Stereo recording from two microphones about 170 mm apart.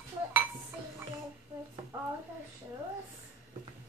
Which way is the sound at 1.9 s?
15° right (ahead or behind).